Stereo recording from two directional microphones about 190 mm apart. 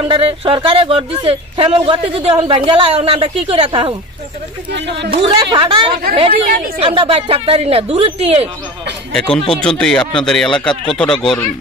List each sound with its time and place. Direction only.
0.0 s speech: 25° right (ahead or behind)
4.7 s speech: 65° right (ahead or behind)
5.2 s speech: 25° right (ahead or behind)
9.1 s speech: 5° left (ahead or behind)